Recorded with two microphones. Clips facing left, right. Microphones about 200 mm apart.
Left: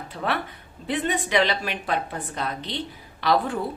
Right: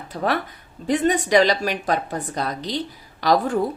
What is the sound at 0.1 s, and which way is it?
A woman's voice, 40° right (ahead or behind).